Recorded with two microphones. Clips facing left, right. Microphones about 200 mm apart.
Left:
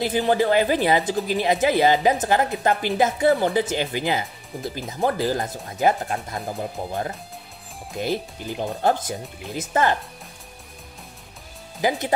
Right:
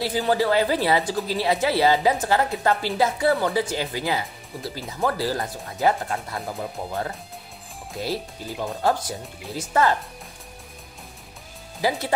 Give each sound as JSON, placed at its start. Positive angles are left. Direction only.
{"t": 0.0, "sound": "a woman's voice", "side_deg": 20}
{"t": 11.8, "sound": "a woman's voice", "side_deg": 20}